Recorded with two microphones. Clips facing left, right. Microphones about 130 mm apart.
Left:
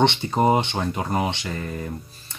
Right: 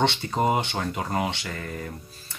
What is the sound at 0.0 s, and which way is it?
Speech, 20° left (ahead or behind).